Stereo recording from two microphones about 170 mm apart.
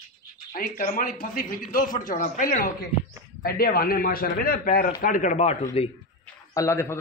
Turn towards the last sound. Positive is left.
turn(degrees=15)  # may be behind; listen again after turning